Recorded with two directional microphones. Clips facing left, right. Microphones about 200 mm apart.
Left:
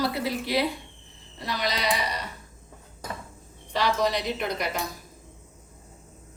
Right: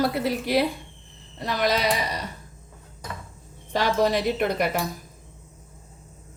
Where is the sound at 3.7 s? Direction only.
50° right (ahead or behind).